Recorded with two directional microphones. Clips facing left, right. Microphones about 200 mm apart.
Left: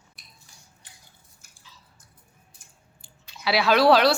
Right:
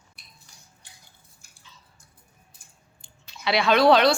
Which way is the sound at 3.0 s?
5° left (ahead or behind).